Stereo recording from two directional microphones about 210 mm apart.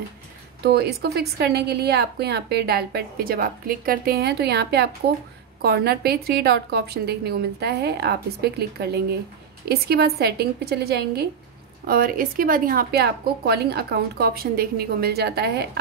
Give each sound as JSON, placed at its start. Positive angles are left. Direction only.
{"t": 0.6, "sound": "a woman's voice", "side_deg": -50}